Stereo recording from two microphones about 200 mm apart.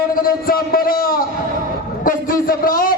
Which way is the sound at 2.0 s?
45° left (ahead or behind).